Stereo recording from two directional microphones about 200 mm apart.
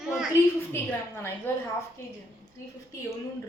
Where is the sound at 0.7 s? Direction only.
10° left (ahead or behind).